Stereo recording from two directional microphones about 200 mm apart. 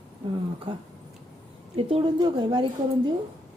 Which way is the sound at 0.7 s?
25° right (ahead or behind).